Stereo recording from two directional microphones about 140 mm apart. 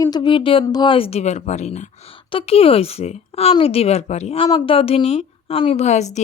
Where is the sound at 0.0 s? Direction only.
30° left (ahead or behind); by 1.9 s 55° left (ahead or behind).